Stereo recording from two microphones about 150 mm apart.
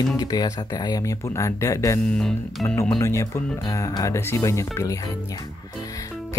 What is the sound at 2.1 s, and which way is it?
Speech, 5° left (ahead or behind).